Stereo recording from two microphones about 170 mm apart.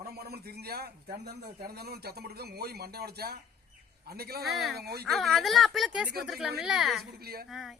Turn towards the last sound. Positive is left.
turn(degrees=0)  # may be behind; listen again after turning